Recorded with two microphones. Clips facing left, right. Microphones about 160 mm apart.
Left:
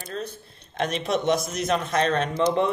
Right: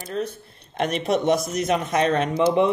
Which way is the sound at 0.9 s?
55° right (ahead or behind).